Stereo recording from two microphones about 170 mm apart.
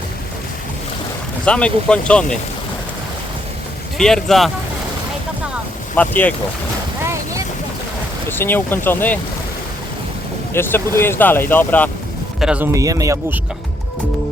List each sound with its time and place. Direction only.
1.5 s speech: 5° left (ahead or behind)
3.9 s speech: centre (ahead or behind)
6.0 s speech: 10° left (ahead or behind)
8.3 s speech: 10° left (ahead or behind)
10.5 s speech: 15° left (ahead or behind)
12.4 s speech: 5° right (ahead or behind)
12.7 s speech: 20° right (ahead or behind)